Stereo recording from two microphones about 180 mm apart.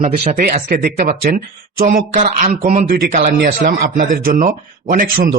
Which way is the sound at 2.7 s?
50° right (ahead or behind).